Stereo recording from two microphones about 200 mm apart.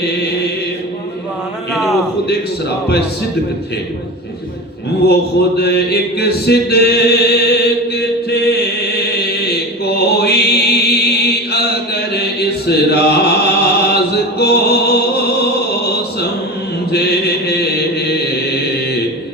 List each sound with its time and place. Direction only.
1.7 s a sound: centre (ahead or behind)
5.5 s chant: 55° left (ahead or behind)
16.9 s mantra: 55° left (ahead or behind)